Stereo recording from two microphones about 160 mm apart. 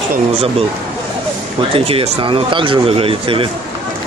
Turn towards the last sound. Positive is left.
turn(degrees=-35)  # may be behind; listen again after turning